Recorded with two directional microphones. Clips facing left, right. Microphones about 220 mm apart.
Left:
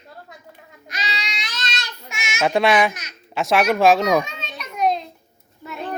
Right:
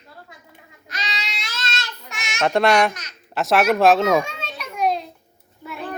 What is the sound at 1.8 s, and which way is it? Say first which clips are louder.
A child's voice: left 1 dB; centre (ahead or behind).